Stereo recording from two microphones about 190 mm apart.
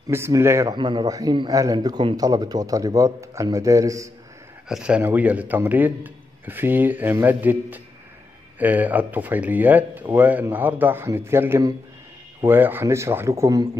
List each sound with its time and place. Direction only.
0.1 s speech: 15° right (ahead or behind)
4.6 s a man's voice: 5° right (ahead or behind)